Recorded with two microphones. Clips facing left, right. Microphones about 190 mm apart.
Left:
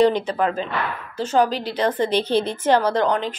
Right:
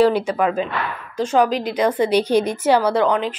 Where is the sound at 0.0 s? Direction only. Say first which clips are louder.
Right 2 dB; 10° right (ahead or behind).